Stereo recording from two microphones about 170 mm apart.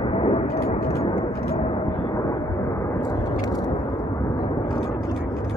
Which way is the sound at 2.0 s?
30° left (ahead or behind).